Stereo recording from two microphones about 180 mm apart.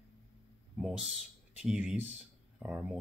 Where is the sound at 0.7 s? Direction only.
Centre (ahead or behind).